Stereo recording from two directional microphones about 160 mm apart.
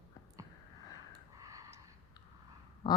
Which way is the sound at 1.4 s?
20° right (ahead or behind).